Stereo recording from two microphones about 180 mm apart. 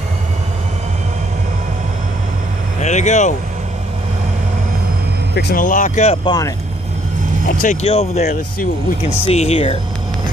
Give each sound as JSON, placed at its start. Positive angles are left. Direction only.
{"t": 2.8, "sound": "speech", "side_deg": 40}
{"t": 5.3, "sound": "speech", "side_deg": 60}
{"t": 6.2, "sound": "speech", "side_deg": 20}
{"t": 7.4, "sound": "speech", "side_deg": 40}